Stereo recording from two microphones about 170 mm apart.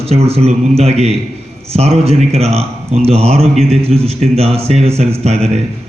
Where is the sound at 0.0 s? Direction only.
35° right (ahead or behind).